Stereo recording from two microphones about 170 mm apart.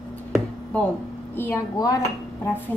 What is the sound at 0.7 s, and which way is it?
A woman's voice, 10° left (ahead or behind).